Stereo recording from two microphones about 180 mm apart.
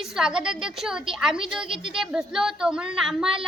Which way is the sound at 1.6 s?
30° right (ahead or behind).